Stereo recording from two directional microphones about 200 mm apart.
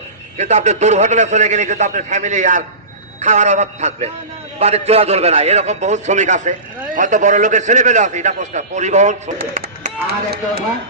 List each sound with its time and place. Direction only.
0.3 s a man's voice: 35° right (ahead or behind)